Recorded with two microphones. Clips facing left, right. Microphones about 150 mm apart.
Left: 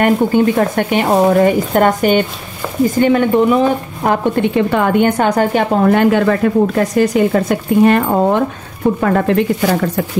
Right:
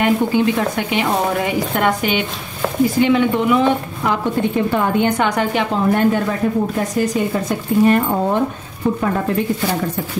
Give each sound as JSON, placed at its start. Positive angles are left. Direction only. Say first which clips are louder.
{"t": 0.0, "sound": "speech", "louder": "left 4 dB", "side_deg": 50}
{"t": 4.4, "sound": "a woman's voice", "louder": "left 4 dB", "side_deg": 80}
{"t": 5.0, "sound": "speech", "louder": "left 4 dB", "side_deg": 45}
{"t": 5.8, "sound": "a woman's voice", "louder": "left 4 dB", "side_deg": 90}
{"t": 9.0, "sound": "a woman's voice", "louder": "left 8 dB", "side_deg": 70}